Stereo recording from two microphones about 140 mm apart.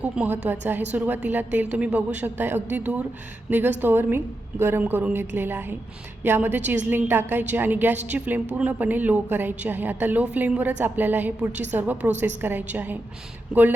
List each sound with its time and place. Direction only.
0.0 s a woman's voice: 10° right (ahead or behind)